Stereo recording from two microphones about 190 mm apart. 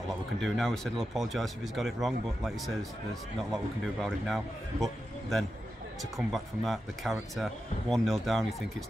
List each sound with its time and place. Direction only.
0.4 s speech: centre (ahead or behind)